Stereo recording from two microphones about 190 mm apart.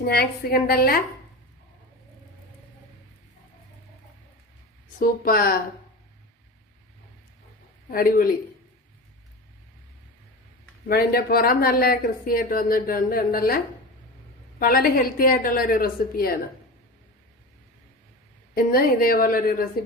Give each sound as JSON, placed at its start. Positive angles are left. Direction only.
{"t": 0.1, "sound": "speech", "side_deg": 55}
{"t": 4.9, "sound": "speech", "side_deg": 50}
{"t": 7.9, "sound": "speech", "side_deg": 50}
{"t": 10.8, "sound": "speech", "side_deg": 55}
{"t": 14.6, "sound": "speech", "side_deg": 50}
{"t": 18.5, "sound": "speech", "side_deg": 50}